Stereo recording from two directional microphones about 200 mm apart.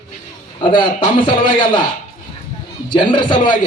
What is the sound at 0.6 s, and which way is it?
A man's voice, 25° left (ahead or behind).